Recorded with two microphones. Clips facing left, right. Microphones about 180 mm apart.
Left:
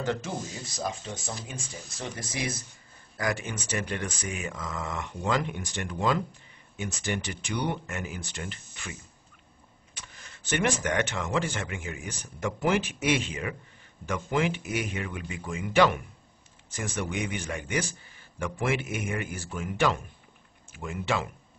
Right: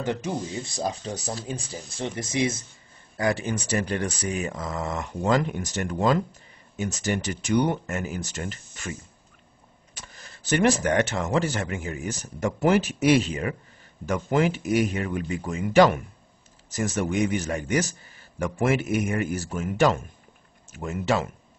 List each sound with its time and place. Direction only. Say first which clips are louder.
0.0 s speech: right 2 dB; 20° right (ahead or behind)
0.7 s speech: right 3 dB; 35° right (ahead or behind)
9.9 s speech: right 3 dB; 40° right (ahead or behind)